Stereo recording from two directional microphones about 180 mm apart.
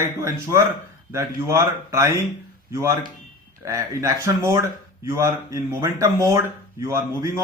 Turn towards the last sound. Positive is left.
turn(degrees=-20)  # may be behind; listen again after turning